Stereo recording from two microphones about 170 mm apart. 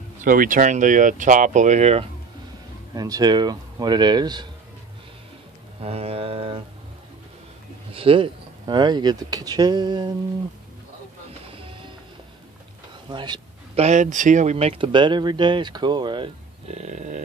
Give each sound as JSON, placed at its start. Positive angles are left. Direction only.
{"t": 0.2, "sound": "speech", "side_deg": -50}
{"t": 2.9, "sound": "speech", "side_deg": -20}
{"t": 5.8, "sound": "speech", "side_deg": -35}
{"t": 7.9, "sound": "speech", "side_deg": -35}
{"t": 11.4, "sound": "music", "side_deg": -30}
{"t": 13.1, "sound": "a sound", "side_deg": -25}
{"t": 13.8, "sound": "speech", "side_deg": -45}